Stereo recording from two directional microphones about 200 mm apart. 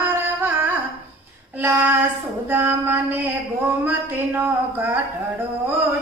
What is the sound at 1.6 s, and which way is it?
Child singing, 10° right (ahead or behind).